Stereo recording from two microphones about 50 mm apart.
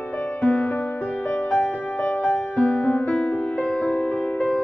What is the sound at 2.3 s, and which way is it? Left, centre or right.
Music, left.